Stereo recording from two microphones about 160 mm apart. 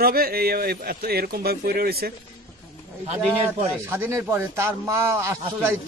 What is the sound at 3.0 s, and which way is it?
Speech, 40° right (ahead or behind).